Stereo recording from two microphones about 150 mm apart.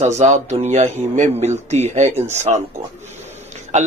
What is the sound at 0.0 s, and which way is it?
A man's voice, 50° right (ahead or behind).